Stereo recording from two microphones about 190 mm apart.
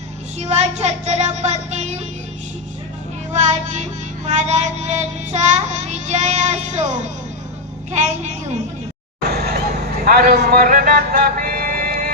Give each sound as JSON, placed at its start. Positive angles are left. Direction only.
{"t": 0.3, "sound": "child singing", "side_deg": -35}
{"t": 3.3, "sound": "child singing", "side_deg": -40}
{"t": 7.9, "sound": "child singing", "side_deg": -40}
{"t": 9.3, "sound": "vehicle", "side_deg": -60}
{"t": 10.0, "sound": "speech", "side_deg": -55}